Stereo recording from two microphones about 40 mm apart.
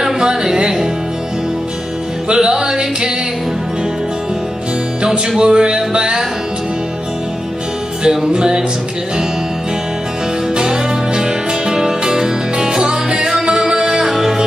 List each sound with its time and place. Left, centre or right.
0.0 s music: centre
2.2 s music: centre
5.4 s music: right
8.0 s music: centre
10.5 s music: right